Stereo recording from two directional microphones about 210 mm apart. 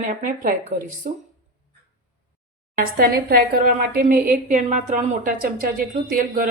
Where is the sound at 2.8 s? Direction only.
45° right (ahead or behind).